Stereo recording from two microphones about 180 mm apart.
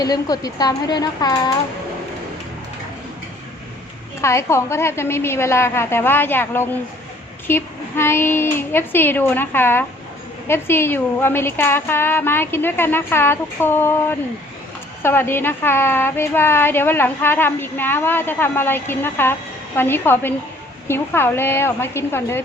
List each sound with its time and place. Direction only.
0.0 s a woman's voice: 20° left (ahead or behind)
4.2 s a woman's voice: 15° left (ahead or behind)